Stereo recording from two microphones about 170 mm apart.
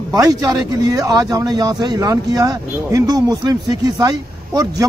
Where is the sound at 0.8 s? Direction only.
25° right (ahead or behind).